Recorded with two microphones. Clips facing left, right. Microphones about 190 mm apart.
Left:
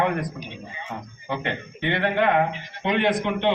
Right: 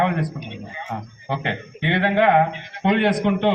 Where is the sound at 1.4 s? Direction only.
75° right (ahead or behind).